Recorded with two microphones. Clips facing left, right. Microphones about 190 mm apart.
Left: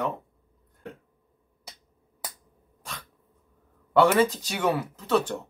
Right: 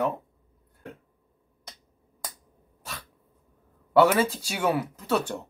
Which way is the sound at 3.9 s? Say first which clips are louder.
Even; 5° right (ahead or behind).